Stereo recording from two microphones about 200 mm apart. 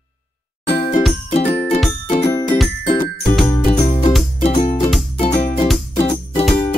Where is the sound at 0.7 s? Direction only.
25° left (ahead or behind).